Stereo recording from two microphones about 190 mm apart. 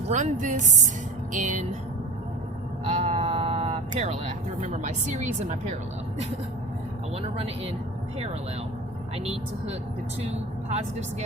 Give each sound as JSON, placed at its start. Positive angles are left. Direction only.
{"t": 0.1, "sound": "a woman's voice", "side_deg": -40}
{"t": 2.8, "sound": "speech", "side_deg": -40}
{"t": 7.2, "sound": "a woman's voice", "side_deg": -30}
{"t": 9.1, "sound": "a woman's voice", "side_deg": -35}